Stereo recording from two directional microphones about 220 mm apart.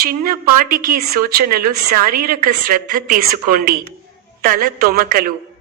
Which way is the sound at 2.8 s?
40° right (ahead or behind).